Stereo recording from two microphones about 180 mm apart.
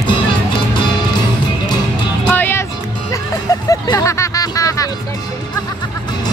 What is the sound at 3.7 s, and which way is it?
Hubbub, 20° left (ahead or behind).